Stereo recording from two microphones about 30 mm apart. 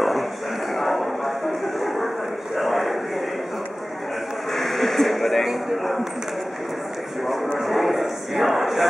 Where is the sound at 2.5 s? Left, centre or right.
Centre.